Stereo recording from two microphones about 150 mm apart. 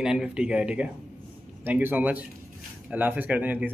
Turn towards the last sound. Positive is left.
turn(degrees=-10)  # may be behind; listen again after turning